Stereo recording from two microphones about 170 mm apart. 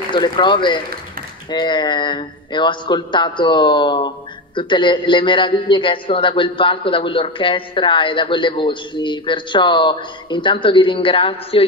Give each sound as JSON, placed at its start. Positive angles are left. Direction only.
{"t": 0.1, "sound": "a man's voice", "side_deg": 25}